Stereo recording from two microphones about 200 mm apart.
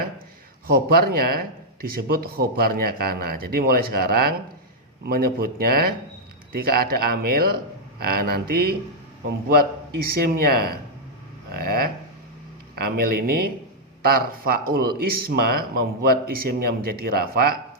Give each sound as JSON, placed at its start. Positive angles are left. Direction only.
{"t": 0.7, "sound": "speech", "side_deg": -50}
{"t": 10.2, "sound": "speech", "side_deg": -50}